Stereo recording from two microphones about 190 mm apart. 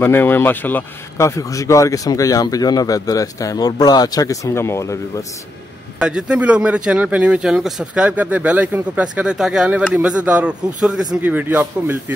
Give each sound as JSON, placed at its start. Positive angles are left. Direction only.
{"t": 0.0, "sound": "speech", "side_deg": 10}
{"t": 5.9, "sound": "a man's voice", "side_deg": -5}